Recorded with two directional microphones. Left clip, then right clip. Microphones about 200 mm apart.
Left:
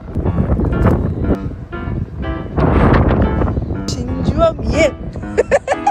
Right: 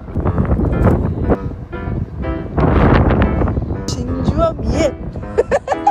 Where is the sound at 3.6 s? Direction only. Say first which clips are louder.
Even; 10° right (ahead or behind).